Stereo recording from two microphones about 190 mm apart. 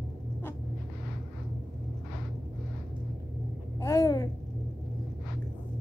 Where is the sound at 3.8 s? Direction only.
15° left (ahead or behind).